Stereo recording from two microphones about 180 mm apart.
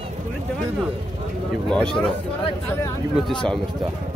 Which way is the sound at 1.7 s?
5° left (ahead or behind).